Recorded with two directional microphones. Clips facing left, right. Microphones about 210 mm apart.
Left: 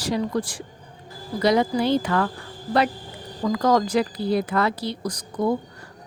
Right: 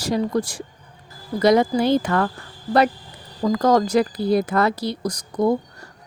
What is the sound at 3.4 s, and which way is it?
Speech, 40° right (ahead or behind).